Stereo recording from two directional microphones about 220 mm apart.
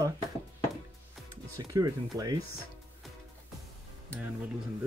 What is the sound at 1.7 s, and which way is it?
Speech, 15° right (ahead or behind).